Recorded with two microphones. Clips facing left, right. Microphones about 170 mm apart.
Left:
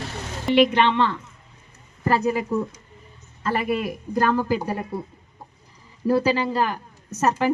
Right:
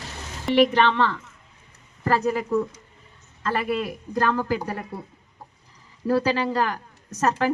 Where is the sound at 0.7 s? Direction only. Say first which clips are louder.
Left 1 dB; 15° left (ahead or behind).